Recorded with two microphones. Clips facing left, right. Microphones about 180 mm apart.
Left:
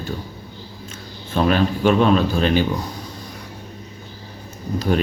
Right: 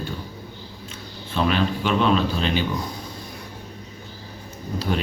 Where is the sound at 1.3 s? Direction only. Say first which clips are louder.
Left 4 dB; 45° left (ahead or behind).